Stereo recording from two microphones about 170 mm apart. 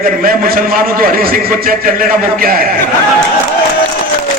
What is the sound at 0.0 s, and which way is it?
A man's voice, 60° right (ahead or behind).